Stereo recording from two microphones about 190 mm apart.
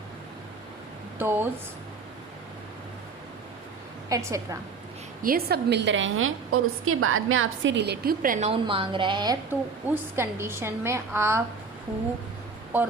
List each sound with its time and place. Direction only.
1.2 s a woman's voice: 10° right (ahead or behind)
4.1 s a woman's voice: 15° right (ahead or behind)
5.2 s a woman's voice: 55° right (ahead or behind)
8.4 s a woman's voice: 30° right (ahead or behind)